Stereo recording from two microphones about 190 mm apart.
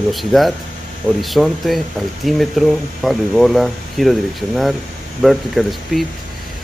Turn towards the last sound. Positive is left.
turn(degrees=0)  # may be behind; listen again after turning